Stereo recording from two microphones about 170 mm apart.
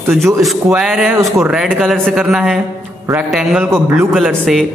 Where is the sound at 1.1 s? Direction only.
15° right (ahead or behind).